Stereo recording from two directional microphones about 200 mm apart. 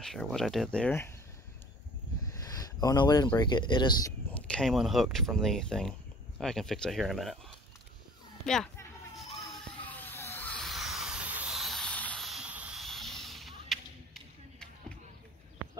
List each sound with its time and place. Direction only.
0.0 s speech: centre (ahead or behind)
2.3 s speech: 20° left (ahead or behind)
4.3 s speech: 5° left (ahead or behind)
9.8 s a sound: 10° left (ahead or behind)